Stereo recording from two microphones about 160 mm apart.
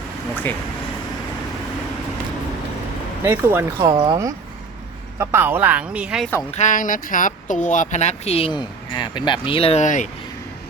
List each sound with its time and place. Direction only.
3.2 s speech: 15° right (ahead or behind)
3.8 s speech: 25° right (ahead or behind); by 6.2 s 5° right (ahead or behind)
6.5 s speech: 50° left (ahead or behind)